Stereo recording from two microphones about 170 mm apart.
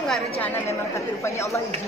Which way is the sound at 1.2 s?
15° left (ahead or behind).